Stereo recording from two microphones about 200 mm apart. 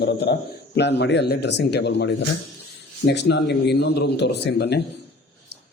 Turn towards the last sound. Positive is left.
turn(degrees=55)  # may be behind; listen again after turning